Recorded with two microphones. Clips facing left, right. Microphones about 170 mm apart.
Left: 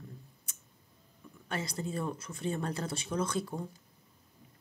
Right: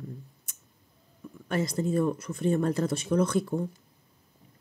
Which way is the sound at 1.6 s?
50° right (ahead or behind).